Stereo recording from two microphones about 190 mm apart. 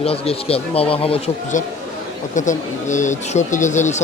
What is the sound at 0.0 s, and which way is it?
Speech, 30° left (ahead or behind).